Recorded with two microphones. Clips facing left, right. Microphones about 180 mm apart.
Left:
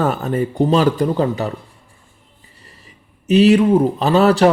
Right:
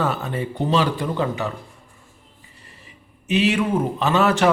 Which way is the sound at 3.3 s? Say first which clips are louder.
Left 8 dB; 40° left (ahead or behind).